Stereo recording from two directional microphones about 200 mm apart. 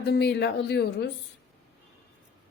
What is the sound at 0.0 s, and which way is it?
Speech, 55° left (ahead or behind).